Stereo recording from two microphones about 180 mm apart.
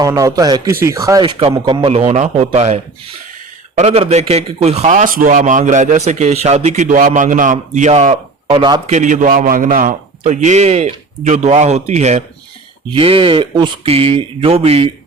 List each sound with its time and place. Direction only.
0.0 s a man's voice: 20° right (ahead or behind)
8.9 s a man's voice: 45° right (ahead or behind)